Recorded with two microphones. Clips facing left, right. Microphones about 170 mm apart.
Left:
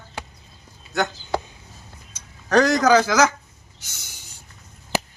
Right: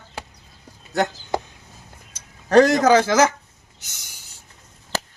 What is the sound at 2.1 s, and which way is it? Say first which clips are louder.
Speech: right 4 dB; 25° right (ahead or behind).